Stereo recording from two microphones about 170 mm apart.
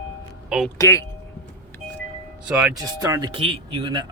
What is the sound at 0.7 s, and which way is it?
Speech, 15° left (ahead or behind).